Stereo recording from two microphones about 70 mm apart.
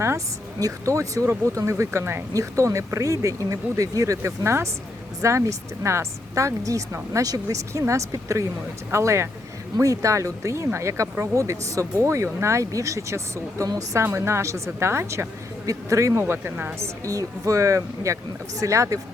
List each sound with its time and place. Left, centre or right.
0.6 s speech: right
2.3 s speech: right
9.7 s speech: right
15.6 s speech: right
16.8 s speech: right